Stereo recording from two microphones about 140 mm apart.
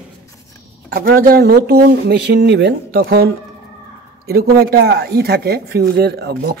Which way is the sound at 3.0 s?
90° right.